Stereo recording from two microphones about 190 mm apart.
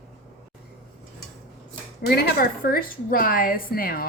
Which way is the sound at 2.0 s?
55° left (ahead or behind).